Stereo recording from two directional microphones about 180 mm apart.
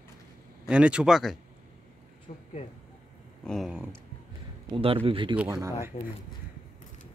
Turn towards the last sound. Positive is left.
turn(degrees=40)  # may be behind; listen again after turning